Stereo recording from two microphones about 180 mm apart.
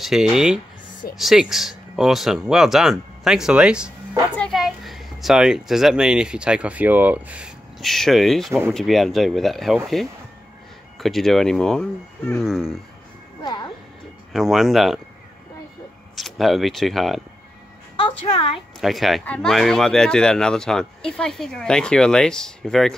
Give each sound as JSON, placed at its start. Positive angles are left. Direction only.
{"t": 0.0, "sound": "a child's voice", "side_deg": 0}
{"t": 11.0, "sound": "a child's voice", "side_deg": 0}
{"t": 13.4, "sound": "music", "side_deg": 25}
{"t": 14.3, "sound": "a child's voice", "side_deg": 0}
{"t": 16.2, "sound": "a child's voice", "side_deg": 0}
{"t": 17.9, "sound": "a sound", "side_deg": 30}
{"t": 18.8, "sound": "a child's voice", "side_deg": 0}